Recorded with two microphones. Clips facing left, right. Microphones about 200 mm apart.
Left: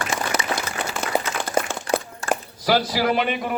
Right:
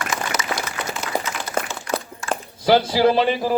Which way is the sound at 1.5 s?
55° left (ahead or behind).